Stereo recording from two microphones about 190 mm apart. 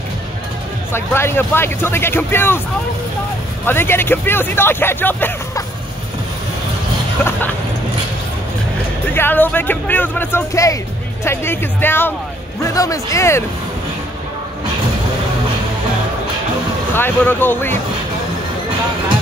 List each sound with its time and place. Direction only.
0.9 s speech: 10° left (ahead or behind)
3.6 s speech: 10° left (ahead or behind)
9.1 s speech: 10° left (ahead or behind)
16.9 s speech: 10° left (ahead or behind)